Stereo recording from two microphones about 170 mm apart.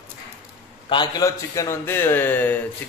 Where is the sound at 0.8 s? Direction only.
25° left (ahead or behind).